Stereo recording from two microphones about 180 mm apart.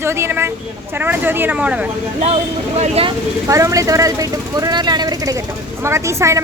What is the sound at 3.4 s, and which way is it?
Speech, 15° right (ahead or behind).